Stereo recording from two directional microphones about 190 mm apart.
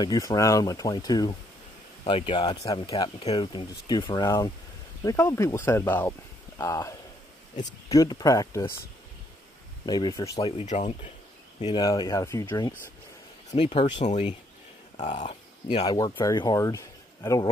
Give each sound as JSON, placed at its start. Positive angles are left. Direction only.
{"t": 0.0, "sound": "speech", "side_deg": 20}
{"t": 9.8, "sound": "speech", "side_deg": 20}
{"t": 10.4, "sound": "speech", "side_deg": 35}
{"t": 11.6, "sound": "speech", "side_deg": 20}
{"t": 13.5, "sound": "speech", "side_deg": 30}
{"t": 16.0, "sound": "speech", "side_deg": 20}